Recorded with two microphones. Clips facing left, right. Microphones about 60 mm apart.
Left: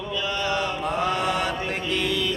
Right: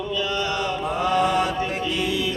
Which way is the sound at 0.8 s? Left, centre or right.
Centre.